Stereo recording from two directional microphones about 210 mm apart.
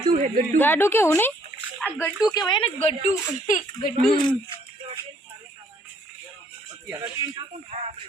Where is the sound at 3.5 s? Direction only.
40° left (ahead or behind).